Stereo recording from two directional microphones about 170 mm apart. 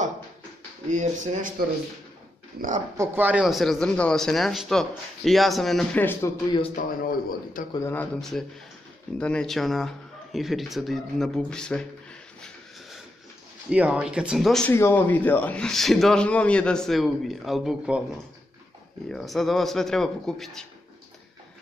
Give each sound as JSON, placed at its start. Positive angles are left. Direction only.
{"t": 0.8, "sound": "speech", "side_deg": -45}
{"t": 3.0, "sound": "a man's voice", "side_deg": -10}
{"t": 6.7, "sound": "a man's voice", "side_deg": 50}
{"t": 7.7, "sound": "a man's voice", "side_deg": 15}
{"t": 13.7, "sound": "a man's voice", "side_deg": -5}
{"t": 14.7, "sound": "a man's voice", "side_deg": 15}
{"t": 19.0, "sound": "a man's voice", "side_deg": 0}